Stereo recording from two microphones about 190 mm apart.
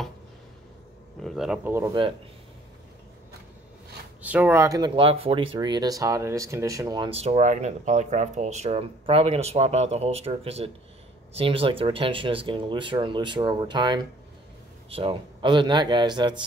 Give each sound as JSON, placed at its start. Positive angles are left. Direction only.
{"t": 1.2, "sound": "speech", "side_deg": 0}
{"t": 4.2, "sound": "speech", "side_deg": -10}